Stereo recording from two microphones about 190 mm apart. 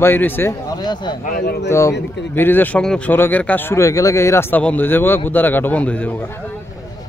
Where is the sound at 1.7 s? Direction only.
15° left (ahead or behind).